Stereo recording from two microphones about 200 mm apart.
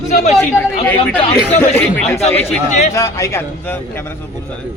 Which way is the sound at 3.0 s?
15° left (ahead or behind).